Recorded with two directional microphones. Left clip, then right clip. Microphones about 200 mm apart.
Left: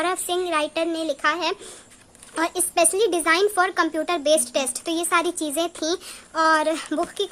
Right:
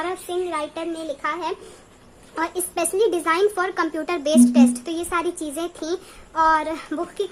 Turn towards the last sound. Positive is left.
turn(degrees=25)  # may be behind; listen again after turning